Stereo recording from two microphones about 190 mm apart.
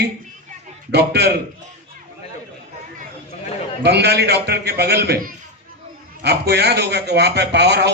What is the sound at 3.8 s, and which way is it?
A man's voice, 60° right (ahead or behind).